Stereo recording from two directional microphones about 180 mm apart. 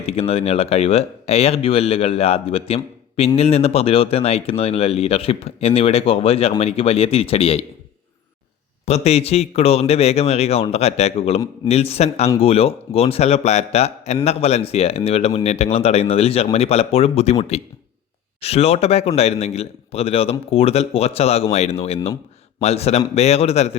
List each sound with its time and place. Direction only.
0.0 s speech: 35° left (ahead or behind)
8.9 s speech: 35° left (ahead or behind)
18.3 s speech: 35° left (ahead or behind)